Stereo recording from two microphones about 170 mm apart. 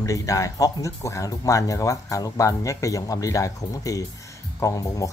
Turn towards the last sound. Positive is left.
turn(degrees=20)  # may be behind; listen again after turning